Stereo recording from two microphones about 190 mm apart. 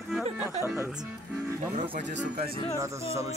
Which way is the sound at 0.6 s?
15° right (ahead or behind).